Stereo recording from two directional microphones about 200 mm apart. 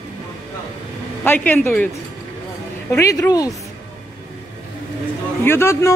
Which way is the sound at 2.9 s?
15° left (ahead or behind).